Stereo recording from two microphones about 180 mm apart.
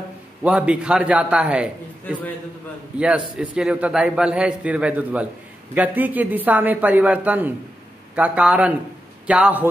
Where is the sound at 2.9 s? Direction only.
5° right (ahead or behind).